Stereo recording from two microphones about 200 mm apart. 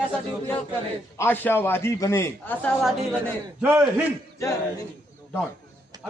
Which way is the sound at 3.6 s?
10° right (ahead or behind).